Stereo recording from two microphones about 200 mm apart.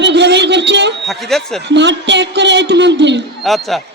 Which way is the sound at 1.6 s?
60° right (ahead or behind).